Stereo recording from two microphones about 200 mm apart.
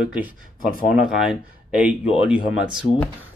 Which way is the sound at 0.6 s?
45° left (ahead or behind).